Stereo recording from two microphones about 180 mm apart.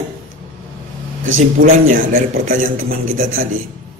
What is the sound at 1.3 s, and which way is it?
A man's voice, 45° right (ahead or behind).